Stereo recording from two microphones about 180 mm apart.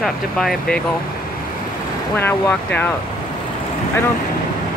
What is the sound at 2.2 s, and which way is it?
Speech, 10° left (ahead or behind).